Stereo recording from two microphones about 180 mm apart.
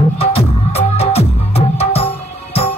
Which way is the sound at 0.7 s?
35° left (ahead or behind).